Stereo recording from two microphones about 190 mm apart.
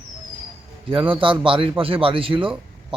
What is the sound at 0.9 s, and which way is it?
A man's voice, 25° right (ahead or behind).